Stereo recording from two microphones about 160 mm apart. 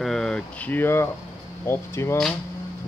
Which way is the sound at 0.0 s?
5° left (ahead or behind).